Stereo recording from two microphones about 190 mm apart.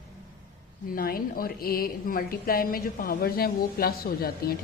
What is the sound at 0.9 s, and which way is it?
Speech, 50° left (ahead or behind).